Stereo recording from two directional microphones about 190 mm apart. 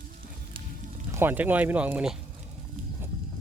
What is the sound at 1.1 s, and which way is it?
Speech, 10° right (ahead or behind).